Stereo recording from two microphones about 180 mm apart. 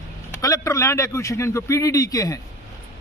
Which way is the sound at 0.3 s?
15° left (ahead or behind).